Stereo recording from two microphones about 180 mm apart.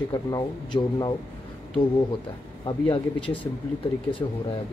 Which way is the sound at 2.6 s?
30° left (ahead or behind).